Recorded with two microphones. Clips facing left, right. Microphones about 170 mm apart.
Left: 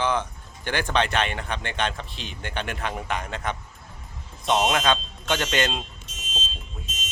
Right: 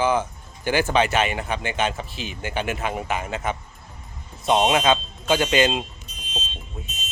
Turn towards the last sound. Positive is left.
turn(degrees=90)